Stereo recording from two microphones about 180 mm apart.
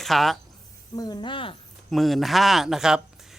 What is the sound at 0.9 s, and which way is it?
Speech, 20° left (ahead or behind).